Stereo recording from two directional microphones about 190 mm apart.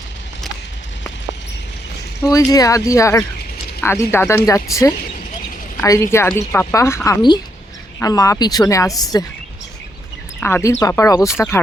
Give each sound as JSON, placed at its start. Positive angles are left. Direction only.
{"t": 2.2, "sound": "a woman's voice", "side_deg": 20}
{"t": 10.4, "sound": "a woman's voice", "side_deg": 15}